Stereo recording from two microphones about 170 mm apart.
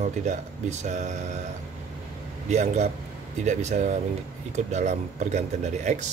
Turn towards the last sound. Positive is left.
turn(degrees=-45)  # may be behind; listen again after turning